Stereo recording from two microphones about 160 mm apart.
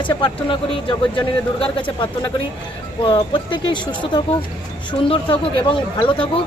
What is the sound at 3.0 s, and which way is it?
Speech, 30° left (ahead or behind).